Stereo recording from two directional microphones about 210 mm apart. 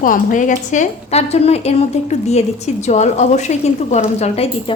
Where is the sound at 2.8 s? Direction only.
35° left (ahead or behind).